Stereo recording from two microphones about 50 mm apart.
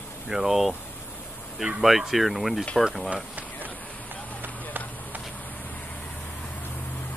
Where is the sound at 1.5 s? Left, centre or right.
Centre.